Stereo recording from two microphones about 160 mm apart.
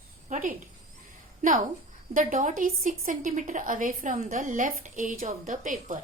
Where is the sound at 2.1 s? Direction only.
55° right (ahead or behind).